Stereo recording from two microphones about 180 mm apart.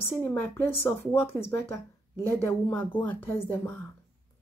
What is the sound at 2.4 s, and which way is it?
Speech, 10° left (ahead or behind).